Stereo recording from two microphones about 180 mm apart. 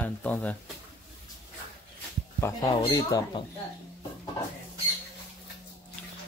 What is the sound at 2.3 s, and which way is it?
Speech, 20° left (ahead or behind).